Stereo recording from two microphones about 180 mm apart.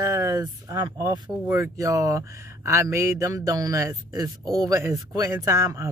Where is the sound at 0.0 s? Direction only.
15° right (ahead or behind).